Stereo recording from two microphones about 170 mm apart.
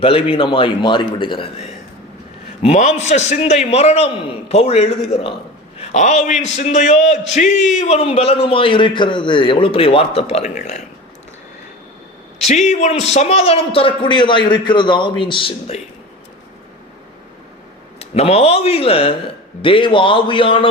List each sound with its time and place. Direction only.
0.0 s a man's voice: 35° left (ahead or behind)
12.5 s a man's voice: 45° left (ahead or behind)
18.0 s a man's voice: 40° left (ahead or behind)